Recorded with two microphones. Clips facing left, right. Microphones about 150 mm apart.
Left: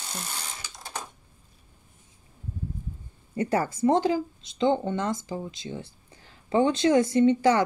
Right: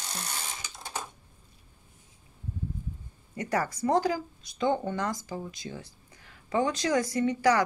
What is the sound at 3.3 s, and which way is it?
Speech, 30° left (ahead or behind).